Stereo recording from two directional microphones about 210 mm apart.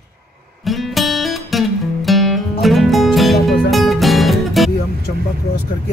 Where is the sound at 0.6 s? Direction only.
Centre (ahead or behind).